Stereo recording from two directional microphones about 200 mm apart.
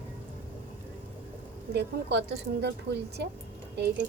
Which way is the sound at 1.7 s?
60° right (ahead or behind).